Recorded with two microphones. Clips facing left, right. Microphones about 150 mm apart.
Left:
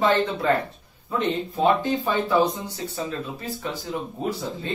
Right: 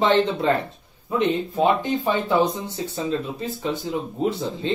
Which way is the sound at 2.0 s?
20° right (ahead or behind).